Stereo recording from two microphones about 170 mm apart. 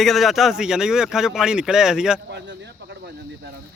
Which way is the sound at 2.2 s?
90° right.